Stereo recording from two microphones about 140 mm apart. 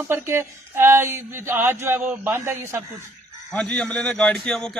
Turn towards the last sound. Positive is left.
turn(degrees=5)  # may be behind; listen again after turning